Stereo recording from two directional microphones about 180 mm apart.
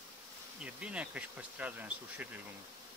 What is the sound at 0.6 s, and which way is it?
Speech, 5° right (ahead or behind).